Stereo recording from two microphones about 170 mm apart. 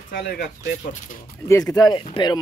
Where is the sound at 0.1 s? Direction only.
65° left (ahead or behind).